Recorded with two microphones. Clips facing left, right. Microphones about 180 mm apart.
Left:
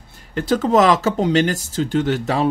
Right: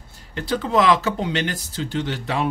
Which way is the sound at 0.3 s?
45° left (ahead or behind).